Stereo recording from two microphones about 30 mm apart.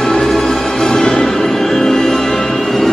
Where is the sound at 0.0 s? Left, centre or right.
Centre.